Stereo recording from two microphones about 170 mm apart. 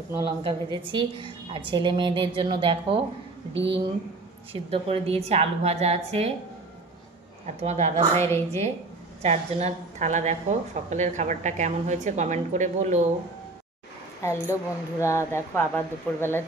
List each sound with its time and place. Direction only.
0.2 s a woman's voice: 30° right (ahead or behind)
3.5 s speech: 90° right
4.5 s a woman's voice: 35° right (ahead or behind)
7.6 s a woman's voice: 40° right (ahead or behind)
9.2 s a woman's voice: 40° right (ahead or behind)
14.2 s speech: 15° left (ahead or behind)